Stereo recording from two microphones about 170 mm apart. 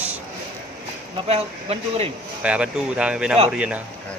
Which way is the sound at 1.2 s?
35° right (ahead or behind).